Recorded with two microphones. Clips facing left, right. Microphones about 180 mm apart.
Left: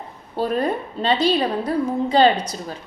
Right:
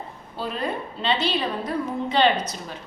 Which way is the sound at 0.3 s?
45° left (ahead or behind).